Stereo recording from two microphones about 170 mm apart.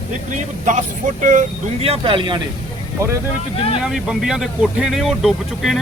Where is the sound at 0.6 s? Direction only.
45° right (ahead or behind); by 2.4 s 30° right (ahead or behind).